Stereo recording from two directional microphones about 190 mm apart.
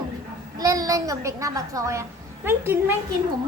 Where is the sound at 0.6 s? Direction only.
20° right (ahead or behind).